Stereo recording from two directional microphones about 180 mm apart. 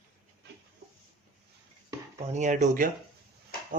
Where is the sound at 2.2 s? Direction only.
40° right (ahead or behind).